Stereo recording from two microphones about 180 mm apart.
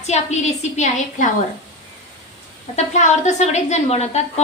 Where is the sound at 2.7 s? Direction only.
40° left (ahead or behind).